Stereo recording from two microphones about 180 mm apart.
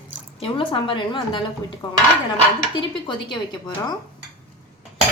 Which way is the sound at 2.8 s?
25° left (ahead or behind).